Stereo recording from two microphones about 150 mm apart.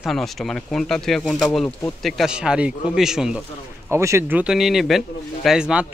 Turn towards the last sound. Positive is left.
turn(degrees=-5)  # may be behind; listen again after turning